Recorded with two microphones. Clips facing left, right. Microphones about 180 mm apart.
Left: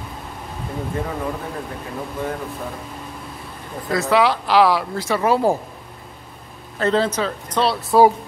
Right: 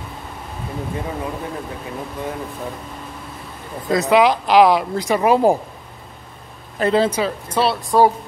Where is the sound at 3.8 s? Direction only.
20° right (ahead or behind).